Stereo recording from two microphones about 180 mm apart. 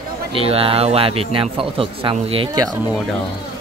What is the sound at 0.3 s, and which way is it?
Speech, 30° right (ahead or behind).